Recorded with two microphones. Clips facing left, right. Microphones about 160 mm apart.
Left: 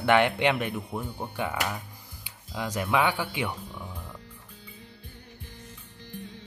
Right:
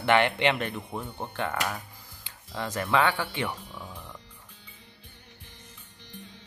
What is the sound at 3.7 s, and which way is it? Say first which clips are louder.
Music: left 1 dB; centre (ahead or behind).